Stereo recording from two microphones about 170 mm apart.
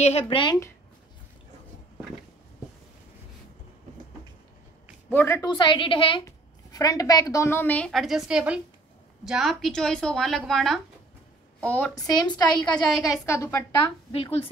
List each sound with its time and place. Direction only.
0.0 s speech: 35° left (ahead or behind)
5.1 s a woman's voice: 15° left (ahead or behind)
5.5 s a woman's voice: 30° left (ahead or behind); by 11.9 s 5° left (ahead or behind)
11.9 s a woman's voice: 25° left (ahead or behind)
13.7 s speech: 35° left (ahead or behind)